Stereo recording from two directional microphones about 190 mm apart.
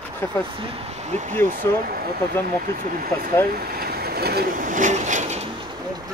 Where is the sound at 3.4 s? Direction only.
50° right (ahead or behind); by 6.1 s 25° right (ahead or behind).